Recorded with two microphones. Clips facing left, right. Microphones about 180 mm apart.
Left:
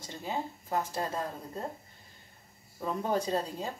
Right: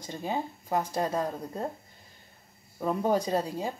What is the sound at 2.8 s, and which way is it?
Speech, 15° right (ahead or behind).